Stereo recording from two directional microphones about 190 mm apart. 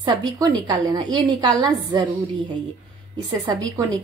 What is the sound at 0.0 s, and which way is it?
A woman's voice, 25° right (ahead or behind).